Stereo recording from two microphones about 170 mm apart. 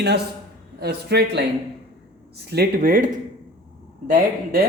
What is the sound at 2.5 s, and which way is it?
Speech, 60° right (ahead or behind).